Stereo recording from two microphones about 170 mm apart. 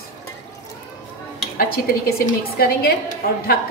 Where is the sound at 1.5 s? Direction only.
60° left (ahead or behind).